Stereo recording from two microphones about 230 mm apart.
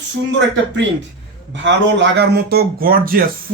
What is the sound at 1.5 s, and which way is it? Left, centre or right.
Speech, right.